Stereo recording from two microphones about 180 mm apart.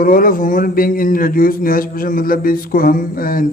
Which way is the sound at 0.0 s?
50° left (ahead or behind).